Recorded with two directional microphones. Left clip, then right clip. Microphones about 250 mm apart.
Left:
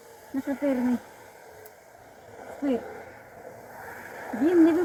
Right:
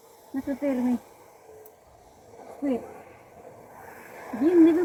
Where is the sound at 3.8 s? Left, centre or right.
Right.